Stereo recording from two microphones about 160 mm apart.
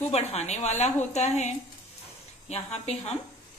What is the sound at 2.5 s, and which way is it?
Speech, 40° left (ahead or behind).